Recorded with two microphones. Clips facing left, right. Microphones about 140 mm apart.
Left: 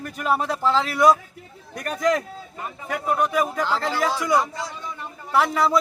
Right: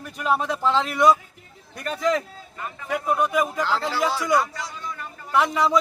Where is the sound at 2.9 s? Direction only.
Centre (ahead or behind).